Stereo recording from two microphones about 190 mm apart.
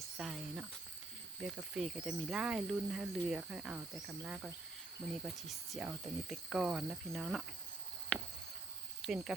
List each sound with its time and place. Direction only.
0.2 s speech: centre (ahead or behind)
9.0 s cricket: centre (ahead or behind)